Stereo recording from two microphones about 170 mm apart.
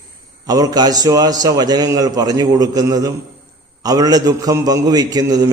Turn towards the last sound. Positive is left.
turn(degrees=-20)  # may be behind; listen again after turning